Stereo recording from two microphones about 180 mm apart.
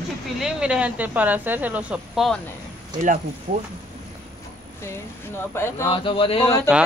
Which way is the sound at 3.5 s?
45° right (ahead or behind).